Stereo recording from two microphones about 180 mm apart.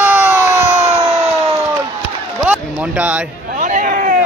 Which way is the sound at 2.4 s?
5° right (ahead or behind).